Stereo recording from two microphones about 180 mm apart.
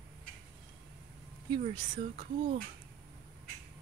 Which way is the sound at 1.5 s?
30° right (ahead or behind).